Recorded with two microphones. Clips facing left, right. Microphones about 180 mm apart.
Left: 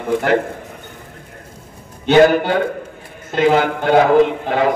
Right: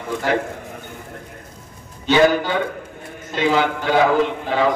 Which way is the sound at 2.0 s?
55° left (ahead or behind).